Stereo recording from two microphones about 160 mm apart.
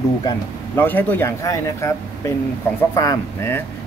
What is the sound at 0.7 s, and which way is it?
Speech, 10° left (ahead or behind).